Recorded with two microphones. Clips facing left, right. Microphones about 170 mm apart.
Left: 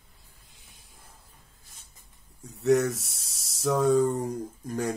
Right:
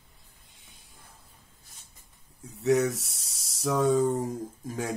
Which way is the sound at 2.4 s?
Centre (ahead or behind).